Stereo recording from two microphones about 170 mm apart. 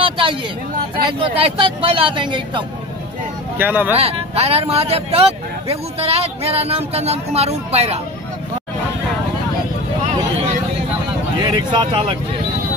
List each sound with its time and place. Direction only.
0.0 s a sound: 30° right (ahead or behind)
1.0 s speech: 30° right (ahead or behind)
3.5 s speech: 10° right (ahead or behind)
3.9 s speech: 35° right (ahead or behind)
11.3 s speech: 25° right (ahead or behind)